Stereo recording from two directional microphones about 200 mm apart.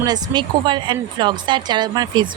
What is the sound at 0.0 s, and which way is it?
Speech, 20° right (ahead or behind).